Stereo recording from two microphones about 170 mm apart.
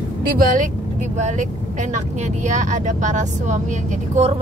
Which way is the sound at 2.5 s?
45° right (ahead or behind).